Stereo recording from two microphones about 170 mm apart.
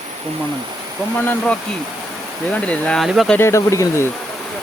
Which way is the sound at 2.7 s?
5° left (ahead or behind).